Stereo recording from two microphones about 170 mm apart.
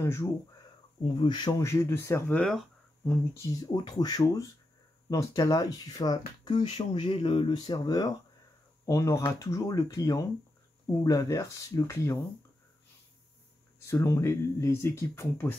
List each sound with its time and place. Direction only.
0.0 s speech: 15° left (ahead or behind)
1.0 s speech: 30° left (ahead or behind); by 2.6 s 5° left (ahead or behind)
3.7 s speech: 25° left (ahead or behind)
13.8 s speech: 15° left (ahead or behind)